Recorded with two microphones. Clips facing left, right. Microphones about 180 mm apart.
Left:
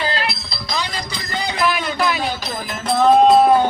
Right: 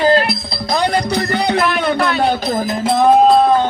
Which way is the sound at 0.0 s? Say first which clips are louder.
Right 10 dB; 50° right (ahead or behind).